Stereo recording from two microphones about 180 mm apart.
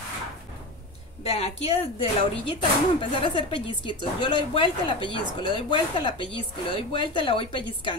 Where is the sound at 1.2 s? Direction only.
35° left (ahead or behind).